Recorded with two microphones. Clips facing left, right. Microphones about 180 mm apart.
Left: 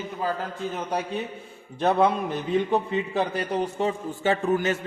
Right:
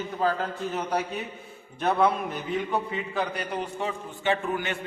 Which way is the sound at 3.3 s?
40° left (ahead or behind).